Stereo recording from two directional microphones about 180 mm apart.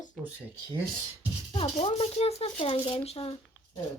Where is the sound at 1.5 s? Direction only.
35° left (ahead or behind).